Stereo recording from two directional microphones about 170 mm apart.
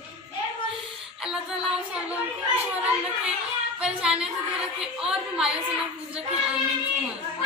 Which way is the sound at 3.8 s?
5° right (ahead or behind).